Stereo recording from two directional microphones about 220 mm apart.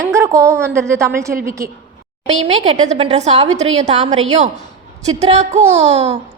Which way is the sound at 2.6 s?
30° right (ahead or behind).